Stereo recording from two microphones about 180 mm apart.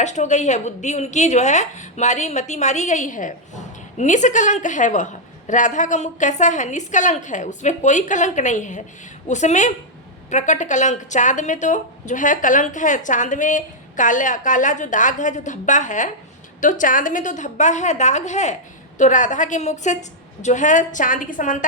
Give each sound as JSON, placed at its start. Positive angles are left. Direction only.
{"t": 0.0, "sound": "a woman's voice", "side_deg": 40}